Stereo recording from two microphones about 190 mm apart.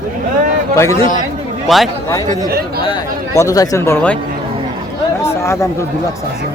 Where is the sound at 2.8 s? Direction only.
20° left (ahead or behind).